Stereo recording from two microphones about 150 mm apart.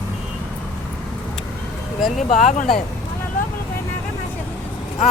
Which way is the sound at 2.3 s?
60° left (ahead or behind).